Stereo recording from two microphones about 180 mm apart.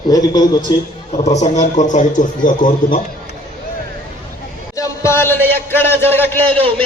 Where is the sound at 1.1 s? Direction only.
40° left (ahead or behind).